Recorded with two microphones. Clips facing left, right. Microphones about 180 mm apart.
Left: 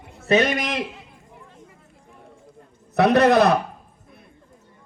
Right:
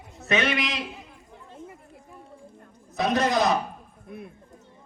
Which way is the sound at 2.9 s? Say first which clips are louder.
Left 8 dB; 65° left (ahead or behind).